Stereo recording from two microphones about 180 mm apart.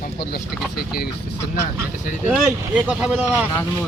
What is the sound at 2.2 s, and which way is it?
Speech, 5° right (ahead or behind).